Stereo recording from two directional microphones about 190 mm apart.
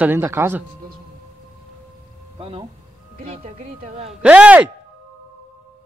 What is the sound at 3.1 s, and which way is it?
Speech, 45° right (ahead or behind).